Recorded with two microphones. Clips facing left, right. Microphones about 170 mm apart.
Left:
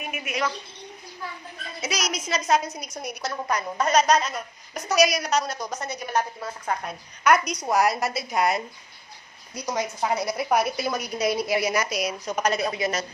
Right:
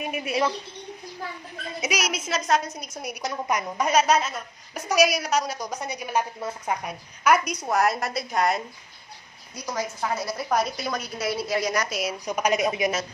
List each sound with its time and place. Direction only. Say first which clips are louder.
0.1 s a woman's voice: right 3 dB; 35° right (ahead or behind)
1.8 s a woman's voice: right 1 dB; 10° right (ahead or behind)
6.4 s a woman's voice: right 1 dB; 20° right (ahead or behind)
6.8 s a woman's voice: left 1 dB; 10° right (ahead or behind)
9.6 s a woman's voice: left 2 dB; 20° left (ahead or behind); by 12.2 s centre (ahead or behind)
12.3 s a woman's voice: right 3 dB; 15° right (ahead or behind)